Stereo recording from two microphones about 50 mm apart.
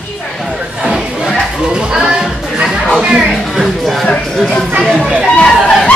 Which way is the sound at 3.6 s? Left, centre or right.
Centre.